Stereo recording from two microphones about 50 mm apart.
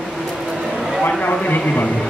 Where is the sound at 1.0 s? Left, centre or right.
Left.